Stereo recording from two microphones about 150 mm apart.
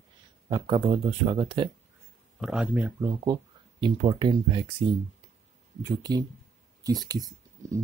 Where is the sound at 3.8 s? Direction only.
35° right (ahead or behind).